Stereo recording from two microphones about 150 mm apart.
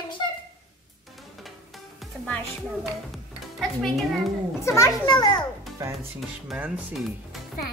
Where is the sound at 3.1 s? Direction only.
Centre (ahead or behind).